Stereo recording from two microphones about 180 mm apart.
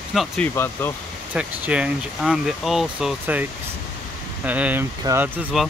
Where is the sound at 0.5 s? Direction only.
15° left (ahead or behind).